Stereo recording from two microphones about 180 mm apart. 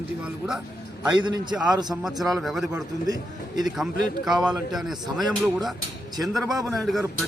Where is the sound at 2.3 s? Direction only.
Centre (ahead or behind).